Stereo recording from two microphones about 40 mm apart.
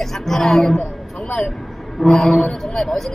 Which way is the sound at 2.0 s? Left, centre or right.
Centre.